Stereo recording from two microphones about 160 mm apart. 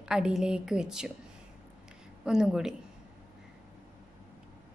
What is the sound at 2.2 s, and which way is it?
Speech, 5° right (ahead or behind).